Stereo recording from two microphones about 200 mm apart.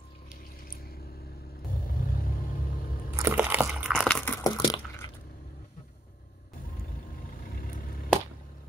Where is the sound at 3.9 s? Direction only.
Centre (ahead or behind).